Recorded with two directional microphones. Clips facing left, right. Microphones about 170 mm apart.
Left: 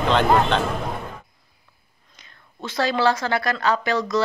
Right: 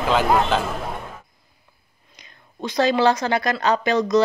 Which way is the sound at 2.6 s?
20° right (ahead or behind).